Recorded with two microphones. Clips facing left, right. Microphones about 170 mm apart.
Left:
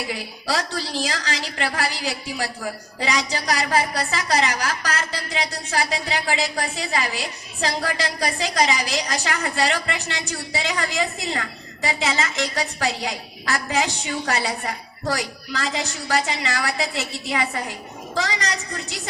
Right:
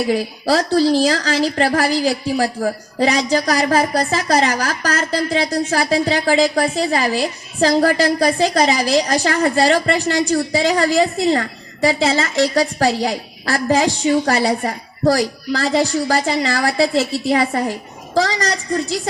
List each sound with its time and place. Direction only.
0.1 s a woman's voice: 40° right (ahead or behind)